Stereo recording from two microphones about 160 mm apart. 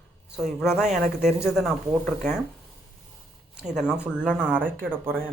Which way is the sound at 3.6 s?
5° right (ahead or behind).